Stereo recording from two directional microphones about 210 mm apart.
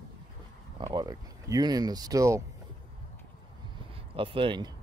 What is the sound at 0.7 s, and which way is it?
Speech, 20° right (ahead or behind).